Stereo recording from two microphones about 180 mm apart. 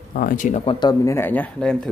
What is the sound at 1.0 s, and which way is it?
Speech, 15° left (ahead or behind).